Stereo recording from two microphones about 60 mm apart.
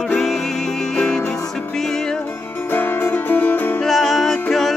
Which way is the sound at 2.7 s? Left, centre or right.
Left.